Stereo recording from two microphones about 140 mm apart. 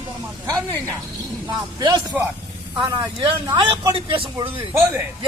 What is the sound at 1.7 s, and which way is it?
Speech, 30° right (ahead or behind).